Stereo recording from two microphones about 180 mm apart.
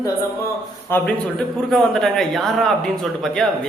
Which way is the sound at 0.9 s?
10° left (ahead or behind).